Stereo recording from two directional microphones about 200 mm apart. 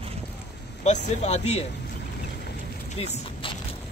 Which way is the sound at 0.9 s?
35° left (ahead or behind).